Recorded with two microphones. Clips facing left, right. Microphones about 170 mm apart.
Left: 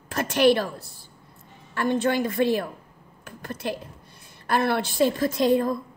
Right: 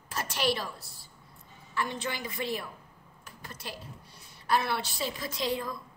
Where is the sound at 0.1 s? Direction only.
55° left (ahead or behind).